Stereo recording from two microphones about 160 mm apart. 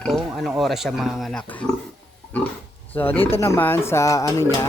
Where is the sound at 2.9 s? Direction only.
10° left (ahead or behind).